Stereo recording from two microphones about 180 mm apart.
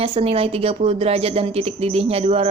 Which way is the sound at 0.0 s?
30° right (ahead or behind).